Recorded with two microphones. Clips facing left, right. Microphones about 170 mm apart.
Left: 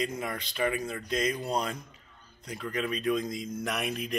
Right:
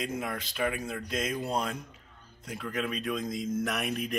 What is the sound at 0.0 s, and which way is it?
A man's voice, centre (ahead or behind).